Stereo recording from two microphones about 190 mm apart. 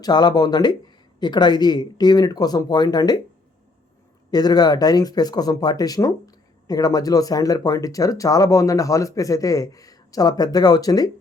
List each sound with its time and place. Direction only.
0.0 s speech: 20° left (ahead or behind)
4.3 s speech: 20° left (ahead or behind)